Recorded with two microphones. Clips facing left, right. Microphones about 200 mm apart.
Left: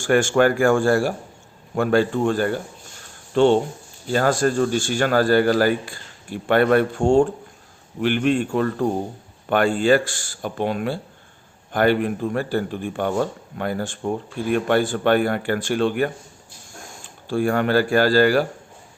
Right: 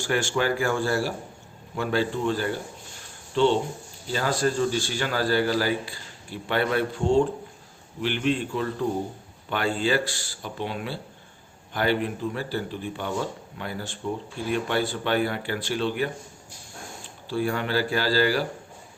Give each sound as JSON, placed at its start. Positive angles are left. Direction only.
{"t": 0.0, "sound": "speech", "side_deg": 50}
{"t": 17.2, "sound": "speech", "side_deg": 50}